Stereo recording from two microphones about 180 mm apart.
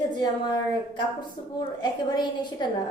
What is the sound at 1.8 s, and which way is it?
Speech, 25° left (ahead or behind).